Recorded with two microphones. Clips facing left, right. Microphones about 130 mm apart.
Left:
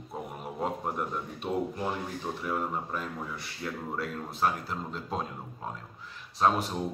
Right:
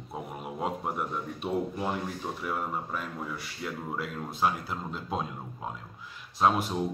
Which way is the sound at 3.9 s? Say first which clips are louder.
Even; 5° right (ahead or behind).